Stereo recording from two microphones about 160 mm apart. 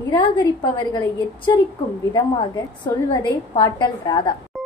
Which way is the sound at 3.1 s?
30° left (ahead or behind).